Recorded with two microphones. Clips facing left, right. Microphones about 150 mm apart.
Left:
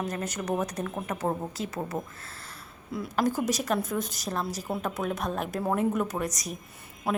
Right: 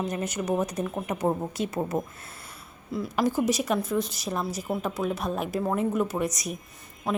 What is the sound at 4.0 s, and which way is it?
Speech, 45° left (ahead or behind).